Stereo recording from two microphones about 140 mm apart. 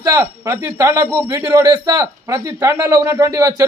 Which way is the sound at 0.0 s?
20° right (ahead or behind).